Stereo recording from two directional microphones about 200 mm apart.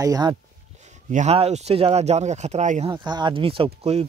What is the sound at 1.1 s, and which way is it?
Speech, 35° right (ahead or behind).